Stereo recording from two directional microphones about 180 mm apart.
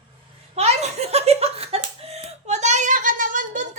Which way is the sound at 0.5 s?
35° right (ahead or behind).